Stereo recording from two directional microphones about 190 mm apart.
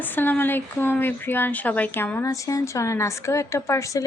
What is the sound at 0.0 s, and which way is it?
Speech, 10° left (ahead or behind).